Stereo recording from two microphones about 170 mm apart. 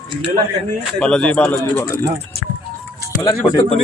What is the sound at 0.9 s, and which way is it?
Speech, 5° left (ahead or behind).